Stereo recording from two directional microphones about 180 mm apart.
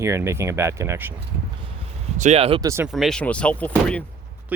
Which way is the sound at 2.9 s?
5° left (ahead or behind).